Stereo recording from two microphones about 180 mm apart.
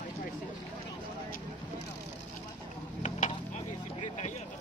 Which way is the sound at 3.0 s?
40° left (ahead or behind).